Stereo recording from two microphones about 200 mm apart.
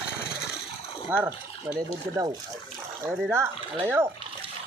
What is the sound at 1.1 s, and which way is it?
Speech, 10° right (ahead or behind).